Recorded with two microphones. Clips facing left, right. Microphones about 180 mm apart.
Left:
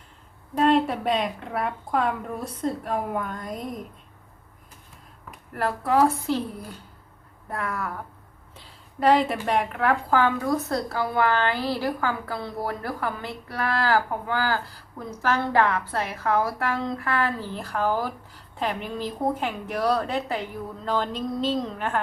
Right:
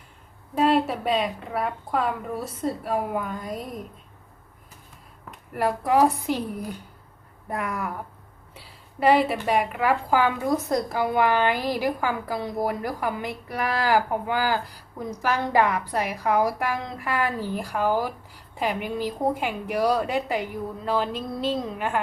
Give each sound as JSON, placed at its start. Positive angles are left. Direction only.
{"t": 0.5, "sound": "a woman's voice", "side_deg": -5}
{"t": 5.5, "sound": "a woman's voice", "side_deg": -15}